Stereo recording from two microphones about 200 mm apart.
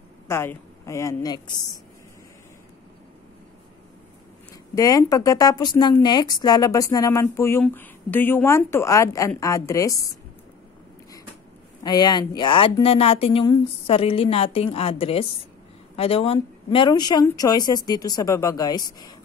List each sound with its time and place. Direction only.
0.3 s speech: 10° left (ahead or behind)
4.7 s speech: 15° left (ahead or behind)
11.8 s speech: 20° left (ahead or behind)